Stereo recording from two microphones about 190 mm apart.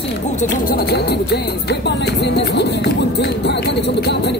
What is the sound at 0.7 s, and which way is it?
Speech, 60° left (ahead or behind).